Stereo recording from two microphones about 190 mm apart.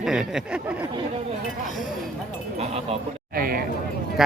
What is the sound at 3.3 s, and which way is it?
Speech, 50° right (ahead or behind).